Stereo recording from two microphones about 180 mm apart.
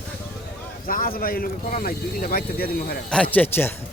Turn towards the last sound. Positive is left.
turn(degrees=10)  # may be behind; listen again after turning